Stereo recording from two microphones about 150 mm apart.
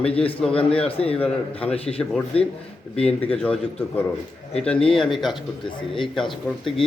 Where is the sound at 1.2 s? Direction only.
10° left (ahead or behind).